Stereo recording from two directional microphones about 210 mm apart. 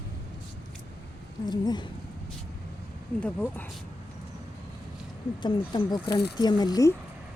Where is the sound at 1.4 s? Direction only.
20° left (ahead or behind).